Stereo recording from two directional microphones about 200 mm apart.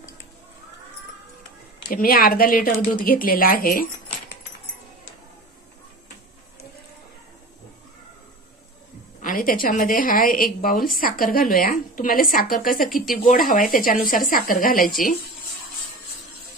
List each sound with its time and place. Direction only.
1.9 s a woman's voice: 45° left (ahead or behind)
9.2 s a woman's voice: 45° left (ahead or behind)